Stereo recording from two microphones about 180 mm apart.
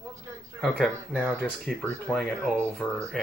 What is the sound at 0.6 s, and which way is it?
Speech, 5° left (ahead or behind).